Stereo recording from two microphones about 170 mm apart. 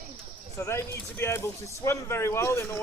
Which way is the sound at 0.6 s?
15° left (ahead or behind).